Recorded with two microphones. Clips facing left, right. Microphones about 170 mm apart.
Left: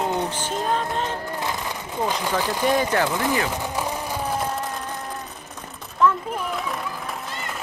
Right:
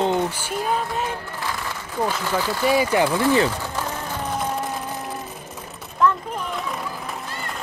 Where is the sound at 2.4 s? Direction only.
15° left (ahead or behind).